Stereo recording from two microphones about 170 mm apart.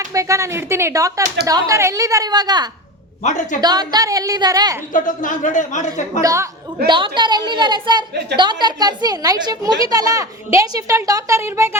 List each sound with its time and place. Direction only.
0.0 s a woman's voice: 20° right (ahead or behind)
3.2 s a woman's voice: 45° left (ahead or behind)
3.6 s a woman's voice: 25° right (ahead or behind)
4.9 s a woman's voice: 50° left (ahead or behind)
6.2 s speech: 15° right (ahead or behind)
6.8 s a woman's voice: 30° right (ahead or behind)